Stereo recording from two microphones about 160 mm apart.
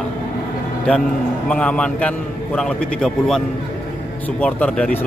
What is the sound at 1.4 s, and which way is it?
A man's voice, 5° left (ahead or behind).